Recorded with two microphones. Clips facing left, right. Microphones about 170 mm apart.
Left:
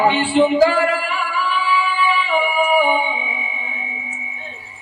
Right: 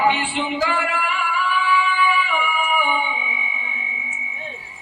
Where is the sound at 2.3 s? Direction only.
35° left (ahead or behind).